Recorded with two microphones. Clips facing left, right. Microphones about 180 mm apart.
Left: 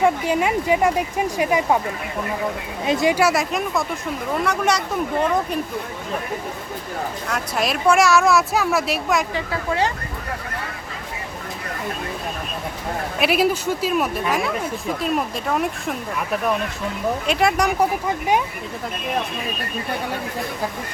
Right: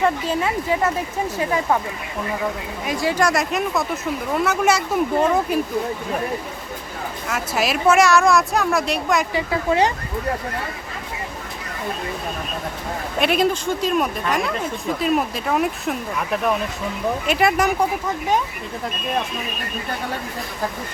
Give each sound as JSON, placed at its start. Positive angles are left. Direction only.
{"t": 0.0, "sound": "speech", "side_deg": 15}
{"t": 2.8, "sound": "speech", "side_deg": 20}
{"t": 3.2, "sound": "speech", "side_deg": 5}
{"t": 7.3, "sound": "speech", "side_deg": -5}
{"t": 9.3, "sound": "speech", "side_deg": -20}
{"t": 13.1, "sound": "speech", "side_deg": 5}